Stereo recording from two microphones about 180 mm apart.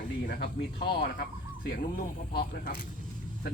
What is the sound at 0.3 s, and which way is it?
Speech, 60° left (ahead or behind).